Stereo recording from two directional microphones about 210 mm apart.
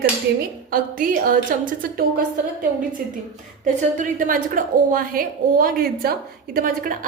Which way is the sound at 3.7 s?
40° right (ahead or behind).